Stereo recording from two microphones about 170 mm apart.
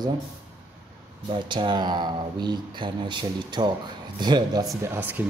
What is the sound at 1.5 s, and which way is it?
A man's voice, 30° right (ahead or behind).